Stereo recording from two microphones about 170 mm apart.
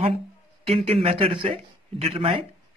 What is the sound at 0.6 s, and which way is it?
A man's voice, 35° right (ahead or behind).